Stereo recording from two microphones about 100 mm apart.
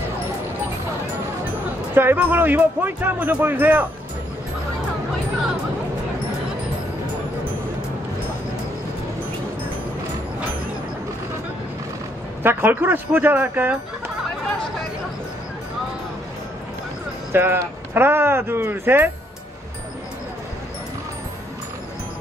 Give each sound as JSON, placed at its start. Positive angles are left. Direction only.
{"t": 2.0, "sound": "speech", "side_deg": -20}
{"t": 12.4, "sound": "speech", "side_deg": -20}
{"t": 17.3, "sound": "speech", "side_deg": -20}